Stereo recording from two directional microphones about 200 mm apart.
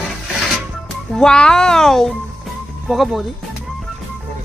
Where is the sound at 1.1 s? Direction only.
5° left (ahead or behind).